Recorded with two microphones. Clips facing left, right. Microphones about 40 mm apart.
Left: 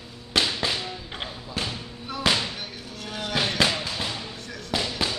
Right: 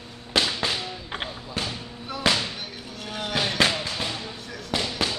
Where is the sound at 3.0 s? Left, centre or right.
Centre.